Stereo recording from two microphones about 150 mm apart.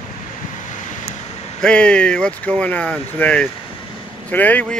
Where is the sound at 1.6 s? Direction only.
5° left (ahead or behind).